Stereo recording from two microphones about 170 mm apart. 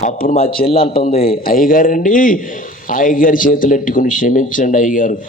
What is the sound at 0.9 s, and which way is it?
Speech, 30° left (ahead or behind).